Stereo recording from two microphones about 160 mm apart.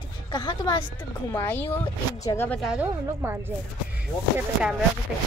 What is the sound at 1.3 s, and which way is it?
Speech, 10° left (ahead or behind).